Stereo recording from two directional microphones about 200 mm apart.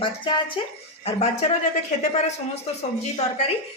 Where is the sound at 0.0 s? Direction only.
25° left (ahead or behind).